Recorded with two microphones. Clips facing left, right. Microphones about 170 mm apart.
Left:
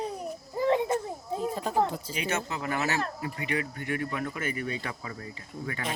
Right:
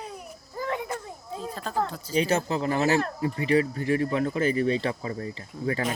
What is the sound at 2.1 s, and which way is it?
Speech, 35° right (ahead or behind).